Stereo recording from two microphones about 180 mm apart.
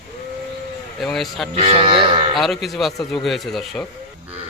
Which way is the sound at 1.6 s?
30° right (ahead or behind).